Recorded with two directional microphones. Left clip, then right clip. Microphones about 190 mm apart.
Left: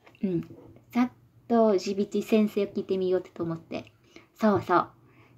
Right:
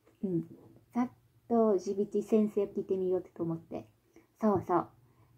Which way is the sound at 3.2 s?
25° left (ahead or behind).